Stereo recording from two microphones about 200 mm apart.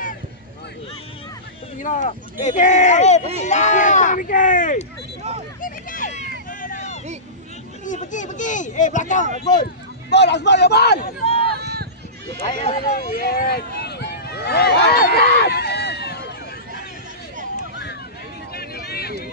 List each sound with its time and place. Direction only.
1.8 s speech: 35° left (ahead or behind)
5.6 s a sound: 45° left (ahead or behind)
7.8 s speech: 40° left (ahead or behind)
10.0 s a man's voice: 60° left (ahead or behind)
11.2 s run: 30° left (ahead or behind)
11.6 s run: 55° right (ahead or behind)
12.4 s speech: 35° left (ahead or behind)
12.8 s a sound: 50° left (ahead or behind)
18.5 s vehicle: 50° left (ahead or behind)